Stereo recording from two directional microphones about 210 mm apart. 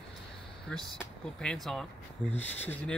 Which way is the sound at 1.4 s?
5° left (ahead or behind).